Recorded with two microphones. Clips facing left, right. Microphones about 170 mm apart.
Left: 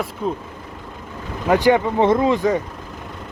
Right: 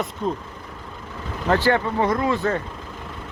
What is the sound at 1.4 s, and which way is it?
Speech, 15° left (ahead or behind).